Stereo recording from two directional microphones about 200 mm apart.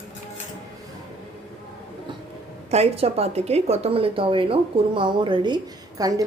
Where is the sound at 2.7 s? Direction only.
30° right (ahead or behind).